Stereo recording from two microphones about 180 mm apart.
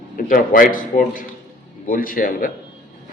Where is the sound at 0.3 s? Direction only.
50° left (ahead or behind).